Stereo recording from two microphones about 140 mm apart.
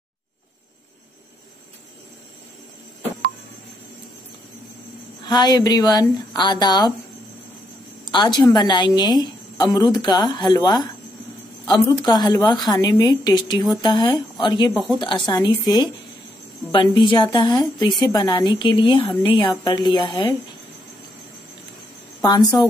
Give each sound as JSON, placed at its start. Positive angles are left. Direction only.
{"t": 5.2, "sound": "a woman's voice", "side_deg": 30}
{"t": 8.1, "sound": "a woman's voice", "side_deg": 35}
{"t": 12.0, "sound": "a woman's voice", "side_deg": 30}
{"t": 19.6, "sound": "a woman's voice", "side_deg": 30}
{"t": 22.2, "sound": "a woman's voice", "side_deg": 25}